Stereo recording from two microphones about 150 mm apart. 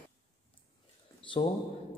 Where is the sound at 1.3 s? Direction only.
35° left (ahead or behind).